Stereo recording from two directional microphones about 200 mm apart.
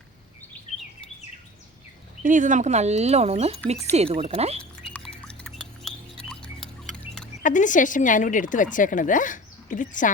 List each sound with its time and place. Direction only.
2.2 s speech: 40° right (ahead or behind)
5.3 s music: 5° left (ahead or behind)
7.4 s a woman's voice: 40° left (ahead or behind)